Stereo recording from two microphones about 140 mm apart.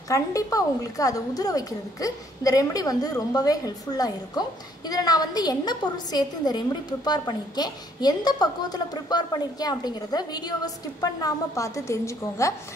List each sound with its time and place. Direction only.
0.1 s a woman's voice: 25° left (ahead or behind)